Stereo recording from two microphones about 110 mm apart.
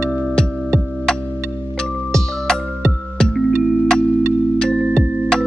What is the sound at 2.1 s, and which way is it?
Music, 5° left (ahead or behind).